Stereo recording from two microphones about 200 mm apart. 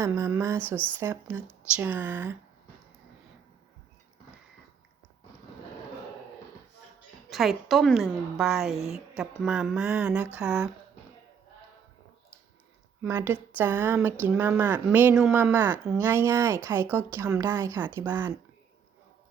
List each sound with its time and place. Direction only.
0.0 s speech: 15° right (ahead or behind)
7.3 s a woman's voice: centre (ahead or behind)
13.0 s speech: 10° right (ahead or behind)